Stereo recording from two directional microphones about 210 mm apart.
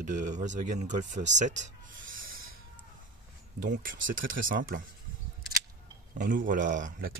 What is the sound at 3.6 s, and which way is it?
Speech, 40° right (ahead or behind).